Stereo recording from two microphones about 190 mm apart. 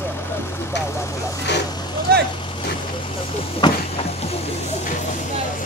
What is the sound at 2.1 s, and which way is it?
Vehicle, 55° right (ahead or behind).